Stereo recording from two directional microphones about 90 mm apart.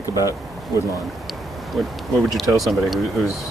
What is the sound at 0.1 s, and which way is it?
Speech, 40° left (ahead or behind).